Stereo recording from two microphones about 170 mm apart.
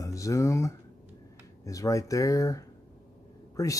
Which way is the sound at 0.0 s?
20° left (ahead or behind).